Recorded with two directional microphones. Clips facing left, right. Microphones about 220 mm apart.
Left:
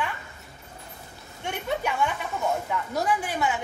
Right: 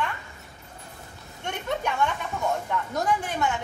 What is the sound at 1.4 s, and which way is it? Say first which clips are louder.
A woman's voice: left 1 dB; 5° left (ahead or behind).